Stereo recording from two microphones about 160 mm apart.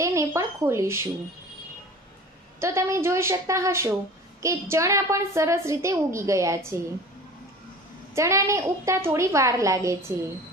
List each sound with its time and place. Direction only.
0.0 s speech: 20° right (ahead or behind)
2.6 s a woman's voice: 15° right (ahead or behind)
8.1 s a woman's voice: 15° right (ahead or behind)